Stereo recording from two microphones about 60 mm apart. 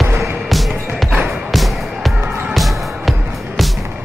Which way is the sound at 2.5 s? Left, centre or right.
Centre.